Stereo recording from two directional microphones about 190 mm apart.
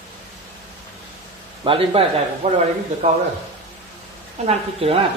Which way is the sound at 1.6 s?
30° right (ahead or behind).